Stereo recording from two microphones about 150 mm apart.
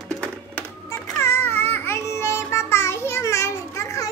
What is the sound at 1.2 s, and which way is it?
Babbling, 15° left (ahead or behind).